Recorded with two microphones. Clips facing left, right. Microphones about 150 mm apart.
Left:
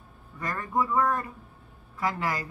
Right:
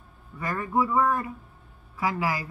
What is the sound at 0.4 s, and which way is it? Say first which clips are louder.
Speech: right 3 dB; 5° right (ahead or behind).